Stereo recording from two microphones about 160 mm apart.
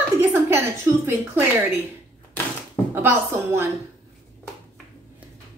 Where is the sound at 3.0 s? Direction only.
10° right (ahead or behind).